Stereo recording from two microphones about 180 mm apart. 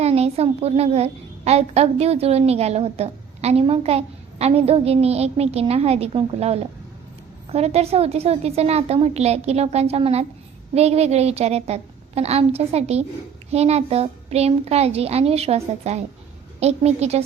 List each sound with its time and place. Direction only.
0.0 s a woman's voice: 35° right (ahead or behind)